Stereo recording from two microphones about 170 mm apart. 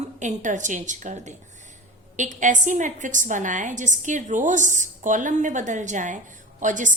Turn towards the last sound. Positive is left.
turn(degrees=-50)  # may be behind; listen again after turning